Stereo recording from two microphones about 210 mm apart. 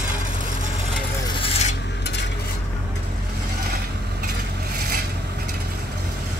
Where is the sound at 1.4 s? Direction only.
30° left (ahead or behind).